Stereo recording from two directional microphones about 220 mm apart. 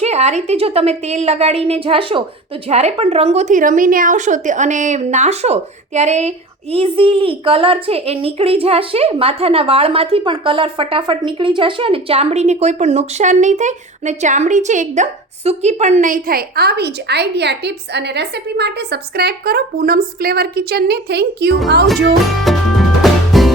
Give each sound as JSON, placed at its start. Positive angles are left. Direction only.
{"t": 0.0, "sound": "a woman's voice", "side_deg": -30}
{"t": 22.5, "sound": "music", "side_deg": 0}